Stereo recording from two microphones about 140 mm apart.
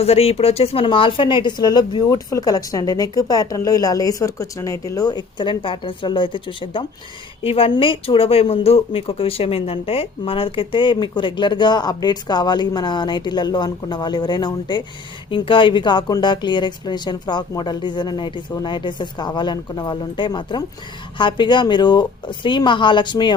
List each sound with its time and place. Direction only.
0.0 s speech: 45° left (ahead or behind)